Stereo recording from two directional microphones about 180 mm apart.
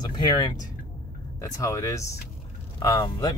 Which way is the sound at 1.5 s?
15° left (ahead or behind).